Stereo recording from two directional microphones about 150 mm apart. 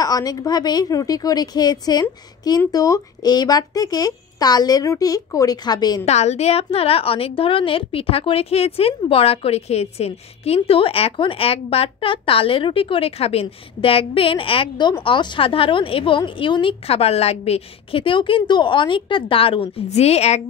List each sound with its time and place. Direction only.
0.0 s speech: 25° left (ahead or behind)
6.0 s a woman's voice: 45° left (ahead or behind)